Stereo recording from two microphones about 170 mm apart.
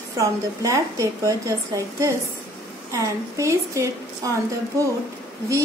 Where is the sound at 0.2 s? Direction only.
20° right (ahead or behind).